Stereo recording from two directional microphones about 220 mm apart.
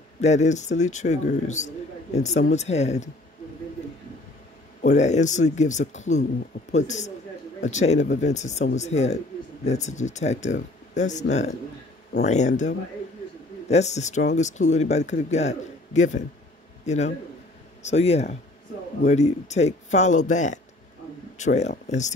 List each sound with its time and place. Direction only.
0.2 s speech: 30° left (ahead or behind)
4.8 s a man's voice: 30° left (ahead or behind)